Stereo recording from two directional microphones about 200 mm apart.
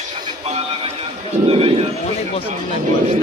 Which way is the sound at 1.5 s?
30° right (ahead or behind).